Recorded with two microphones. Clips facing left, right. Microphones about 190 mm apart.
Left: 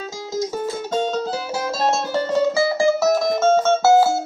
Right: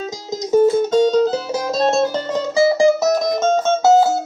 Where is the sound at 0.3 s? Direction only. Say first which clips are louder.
Right 10 dB; 20° right (ahead or behind).